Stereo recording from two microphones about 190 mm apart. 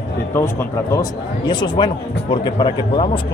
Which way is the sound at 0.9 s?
20° left (ahead or behind).